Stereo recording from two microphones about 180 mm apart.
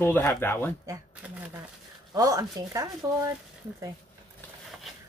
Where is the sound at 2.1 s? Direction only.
20° right (ahead or behind).